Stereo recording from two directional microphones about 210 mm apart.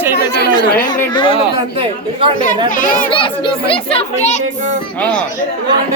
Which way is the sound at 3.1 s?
25° left (ahead or behind).